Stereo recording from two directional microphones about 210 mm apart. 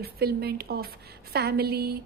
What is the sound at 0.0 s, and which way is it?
A woman's voice, 50° right (ahead or behind).